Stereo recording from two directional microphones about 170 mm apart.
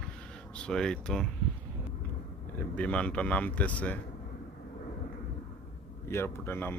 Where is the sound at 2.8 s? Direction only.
5° left (ahead or behind).